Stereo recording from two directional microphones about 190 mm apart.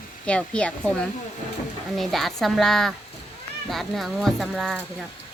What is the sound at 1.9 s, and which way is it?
Speech, centre (ahead or behind).